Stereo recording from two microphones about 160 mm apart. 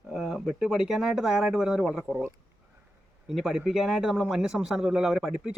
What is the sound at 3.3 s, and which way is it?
Speech, centre (ahead or behind).